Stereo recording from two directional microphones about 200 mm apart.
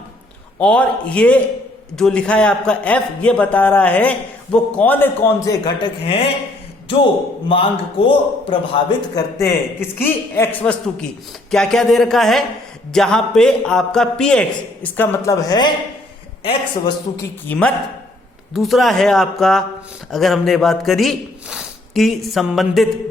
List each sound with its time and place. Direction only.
0.6 s a man's voice: 5° left (ahead or behind); by 9.2 s 25° left (ahead or behind)
10.0 s a man's voice: 10° left (ahead or behind); by 16.9 s 30° left (ahead or behind)
17.5 s a man's voice: 10° left (ahead or behind)